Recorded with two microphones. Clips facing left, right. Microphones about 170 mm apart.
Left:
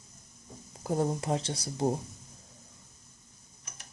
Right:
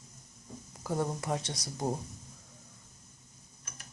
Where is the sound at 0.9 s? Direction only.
25° left (ahead or behind).